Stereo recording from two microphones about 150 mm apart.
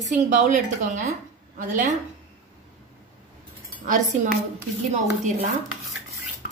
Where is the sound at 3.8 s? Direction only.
60° right (ahead or behind).